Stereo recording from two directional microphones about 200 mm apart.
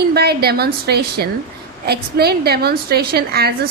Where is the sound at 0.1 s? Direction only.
50° right (ahead or behind).